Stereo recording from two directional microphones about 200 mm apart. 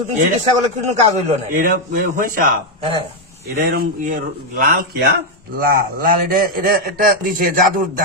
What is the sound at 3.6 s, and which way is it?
A man's voice, 45° right (ahead or behind).